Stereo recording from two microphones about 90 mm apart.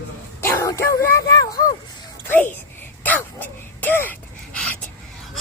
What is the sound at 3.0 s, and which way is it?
Dog, 20° left (ahead or behind).